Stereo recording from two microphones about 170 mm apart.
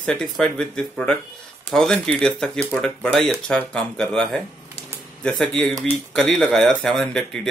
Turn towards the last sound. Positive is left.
turn(degrees=5)  # may be behind; listen again after turning